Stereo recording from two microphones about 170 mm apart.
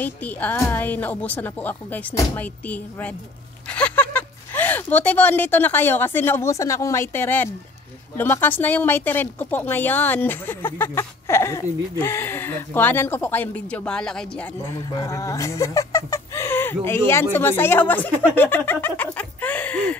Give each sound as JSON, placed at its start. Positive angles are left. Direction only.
{"t": 0.0, "sound": "speech", "side_deg": 10}
{"t": 14.6, "sound": "speech", "side_deg": 20}